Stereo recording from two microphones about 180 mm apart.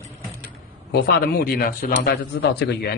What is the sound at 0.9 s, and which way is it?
Speech, 55° left (ahead or behind).